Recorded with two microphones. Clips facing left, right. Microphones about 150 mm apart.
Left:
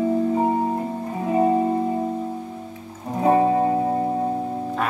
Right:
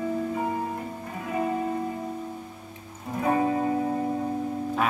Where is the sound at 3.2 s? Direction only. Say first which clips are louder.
Left 7 dB; 30° left (ahead or behind).